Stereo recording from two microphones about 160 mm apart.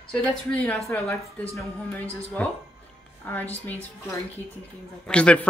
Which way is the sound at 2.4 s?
10° left (ahead or behind).